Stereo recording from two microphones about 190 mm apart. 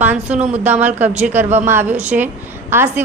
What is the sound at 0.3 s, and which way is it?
Speech, 40° right (ahead or behind).